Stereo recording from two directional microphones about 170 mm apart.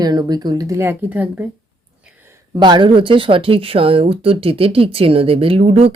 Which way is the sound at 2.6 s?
25° right (ahead or behind).